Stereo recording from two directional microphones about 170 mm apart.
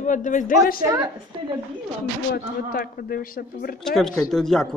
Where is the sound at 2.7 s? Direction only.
60° left (ahead or behind).